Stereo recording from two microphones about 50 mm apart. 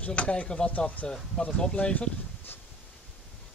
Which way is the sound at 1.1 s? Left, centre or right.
Centre.